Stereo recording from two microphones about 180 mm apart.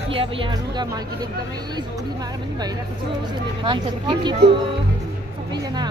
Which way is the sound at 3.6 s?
25° right (ahead or behind).